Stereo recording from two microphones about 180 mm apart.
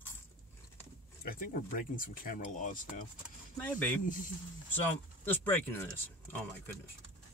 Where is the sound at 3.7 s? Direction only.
10° left (ahead or behind).